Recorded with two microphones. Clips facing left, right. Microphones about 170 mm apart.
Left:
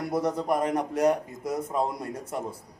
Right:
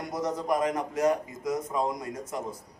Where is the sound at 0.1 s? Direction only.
60° left (ahead or behind).